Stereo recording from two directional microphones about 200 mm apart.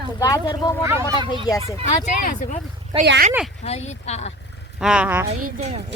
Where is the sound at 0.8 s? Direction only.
10° right (ahead or behind).